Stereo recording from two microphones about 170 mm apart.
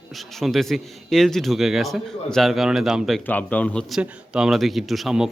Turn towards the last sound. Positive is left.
turn(degrees=0)  # may be behind; listen again after turning